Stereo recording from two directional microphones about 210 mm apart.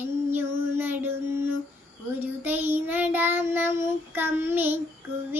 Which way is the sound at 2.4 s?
10° right (ahead or behind).